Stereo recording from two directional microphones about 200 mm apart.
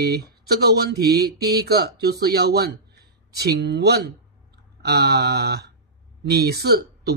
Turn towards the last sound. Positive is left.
turn(degrees=-55)  # may be behind; listen again after turning